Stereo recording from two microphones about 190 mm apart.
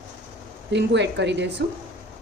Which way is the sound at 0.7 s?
65° right (ahead or behind).